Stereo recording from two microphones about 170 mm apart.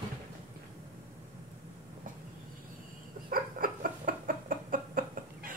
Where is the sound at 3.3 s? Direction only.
55° right (ahead or behind).